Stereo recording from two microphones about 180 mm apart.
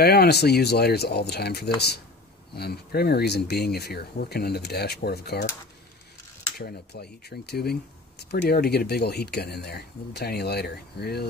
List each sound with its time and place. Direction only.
0.0 s speech: 60° left (ahead or behind)
6.6 s speech: 65° left (ahead or behind)